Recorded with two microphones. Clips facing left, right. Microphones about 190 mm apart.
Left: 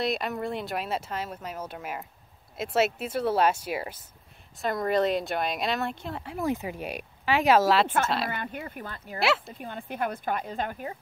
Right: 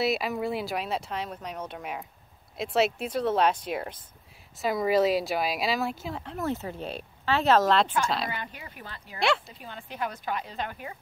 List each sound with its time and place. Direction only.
0.0 s speech: 5° right (ahead or behind)
6.3 s speech: 15° left (ahead or behind)
8.3 s a woman's voice: 50° left (ahead or behind)